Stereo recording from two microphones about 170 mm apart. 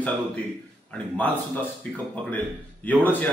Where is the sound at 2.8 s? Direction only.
10° left (ahead or behind).